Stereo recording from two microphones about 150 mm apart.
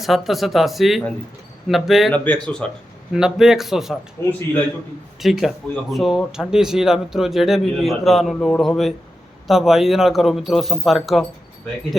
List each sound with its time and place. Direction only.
0.0 s speech: centre (ahead or behind)
2.1 s speech: 10° left (ahead or behind)
3.1 s speech: 5° right (ahead or behind)
4.2 s speech: 15° left (ahead or behind)
5.2 s speech: centre (ahead or behind)